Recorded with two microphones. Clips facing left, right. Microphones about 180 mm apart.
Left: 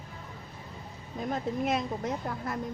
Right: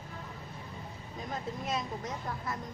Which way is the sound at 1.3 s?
60° left (ahead or behind).